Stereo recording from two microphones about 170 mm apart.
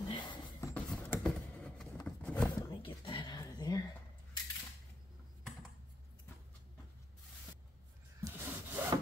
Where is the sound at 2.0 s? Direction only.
5° left (ahead or behind).